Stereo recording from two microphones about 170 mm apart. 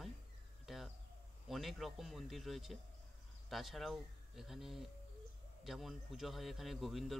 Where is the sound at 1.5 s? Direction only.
Centre (ahead or behind).